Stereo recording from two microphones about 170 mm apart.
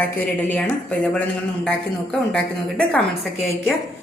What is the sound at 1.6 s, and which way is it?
A woman's voice, 5° left (ahead or behind).